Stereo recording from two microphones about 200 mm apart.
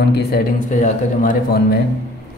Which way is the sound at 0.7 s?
40° left (ahead or behind).